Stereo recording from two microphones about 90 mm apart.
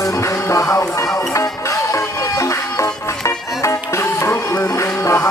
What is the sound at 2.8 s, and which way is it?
Music, 35° left (ahead or behind).